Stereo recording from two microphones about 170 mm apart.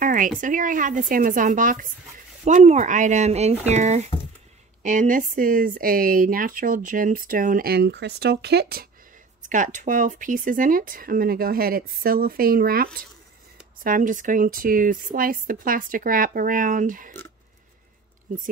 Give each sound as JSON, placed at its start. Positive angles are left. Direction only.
{"t": 0.0, "sound": "a sound", "side_deg": -50}
{"t": 0.4, "sound": "speech", "side_deg": -50}
{"t": 9.4, "sound": "speech", "side_deg": -50}